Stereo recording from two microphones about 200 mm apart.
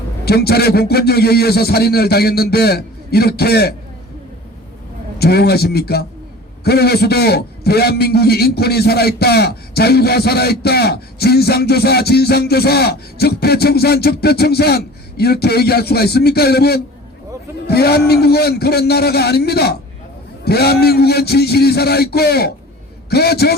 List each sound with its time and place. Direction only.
0.3 s a man's voice: 55° left (ahead or behind)
5.2 s a man's voice: 50° left (ahead or behind)